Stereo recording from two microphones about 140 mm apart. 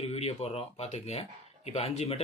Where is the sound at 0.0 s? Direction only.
45° left (ahead or behind).